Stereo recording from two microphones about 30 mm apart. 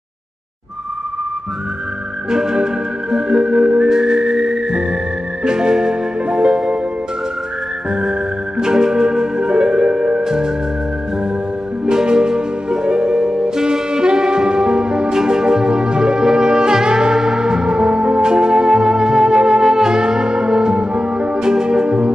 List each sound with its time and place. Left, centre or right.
2.3 s music: right
3.9 s music: right
7.9 s music: right
11.8 s music: right
19.6 s brass instrument: right
21.8 s music: right